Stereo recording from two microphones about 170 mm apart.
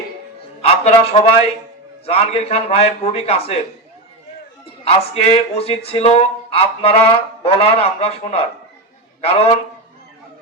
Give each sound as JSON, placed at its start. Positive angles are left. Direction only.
{"t": 0.6, "sound": "a man's voice", "side_deg": 35}
{"t": 4.8, "sound": "speech", "side_deg": 35}